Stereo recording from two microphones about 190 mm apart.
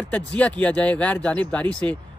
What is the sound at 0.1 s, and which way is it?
Speech, 5° left (ahead or behind).